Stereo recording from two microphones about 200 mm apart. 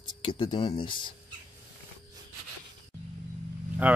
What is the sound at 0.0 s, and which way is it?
Speech, 25° left (ahead or behind).